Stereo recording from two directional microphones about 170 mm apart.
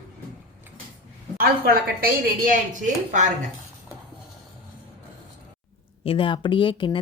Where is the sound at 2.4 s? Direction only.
50° right (ahead or behind).